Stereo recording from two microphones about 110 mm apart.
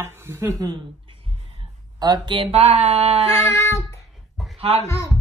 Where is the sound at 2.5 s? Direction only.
75° right (ahead or behind).